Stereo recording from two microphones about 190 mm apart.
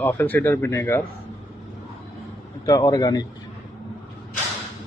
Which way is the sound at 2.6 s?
20° left (ahead or behind).